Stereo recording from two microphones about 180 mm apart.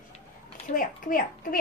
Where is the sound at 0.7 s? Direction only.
50° left (ahead or behind).